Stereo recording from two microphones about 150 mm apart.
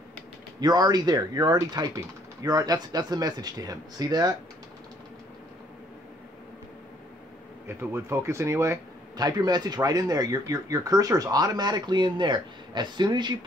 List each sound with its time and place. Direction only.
0.6 s speech: 25° right (ahead or behind)
7.6 s speech: 15° right (ahead or behind)